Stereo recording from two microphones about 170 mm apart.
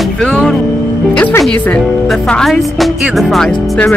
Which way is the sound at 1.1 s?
10° left (ahead or behind).